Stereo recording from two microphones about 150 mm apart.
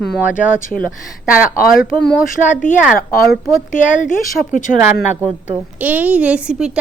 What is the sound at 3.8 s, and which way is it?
Speech, 60° left (ahead or behind).